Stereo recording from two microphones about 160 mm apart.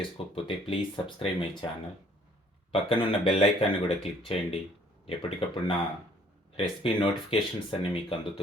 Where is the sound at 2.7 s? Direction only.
35° left (ahead or behind).